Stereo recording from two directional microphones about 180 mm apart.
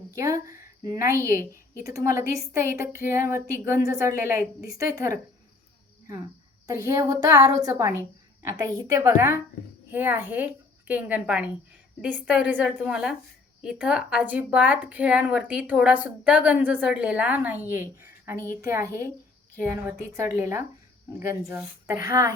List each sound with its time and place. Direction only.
0.1 s a woman's voice: 15° right (ahead or behind)
6.7 s speech: 15° right (ahead or behind)